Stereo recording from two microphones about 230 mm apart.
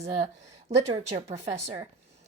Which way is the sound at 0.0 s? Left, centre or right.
Right.